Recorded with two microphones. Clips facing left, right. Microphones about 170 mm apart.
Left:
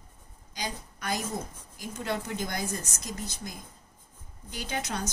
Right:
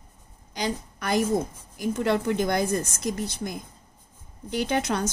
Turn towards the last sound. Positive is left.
turn(degrees=-60)  # may be behind; listen again after turning